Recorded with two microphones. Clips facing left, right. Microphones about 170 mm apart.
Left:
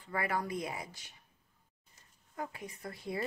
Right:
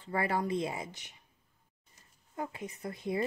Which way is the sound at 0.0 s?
30° right (ahead or behind).